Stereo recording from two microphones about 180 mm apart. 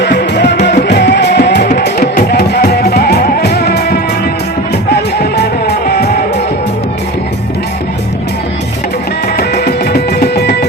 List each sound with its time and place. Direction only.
0.0 s music: 70° left (ahead or behind)
9.4 s music: 65° left (ahead or behind)